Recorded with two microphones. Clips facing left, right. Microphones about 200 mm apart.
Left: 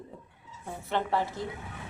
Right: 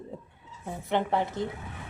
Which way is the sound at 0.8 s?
20° right (ahead or behind).